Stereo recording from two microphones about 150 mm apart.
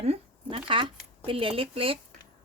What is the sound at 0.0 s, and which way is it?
Shuffling cards, 40° right (ahead or behind).